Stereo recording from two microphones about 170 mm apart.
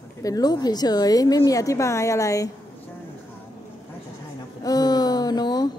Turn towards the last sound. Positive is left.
turn(degrees=25)  # may be behind; listen again after turning